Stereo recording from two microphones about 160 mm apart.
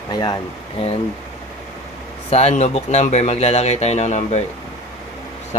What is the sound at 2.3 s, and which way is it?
Speech, 40° left (ahead or behind).